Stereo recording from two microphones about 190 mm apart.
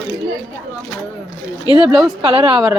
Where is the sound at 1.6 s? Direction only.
25° left (ahead or behind).